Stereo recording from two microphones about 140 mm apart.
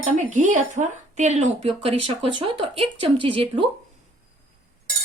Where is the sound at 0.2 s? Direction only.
65° right (ahead or behind); by 3.7 s 40° right (ahead or behind).